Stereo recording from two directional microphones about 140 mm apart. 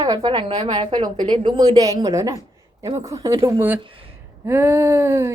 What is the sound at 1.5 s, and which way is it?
Speech, 30° right (ahead or behind).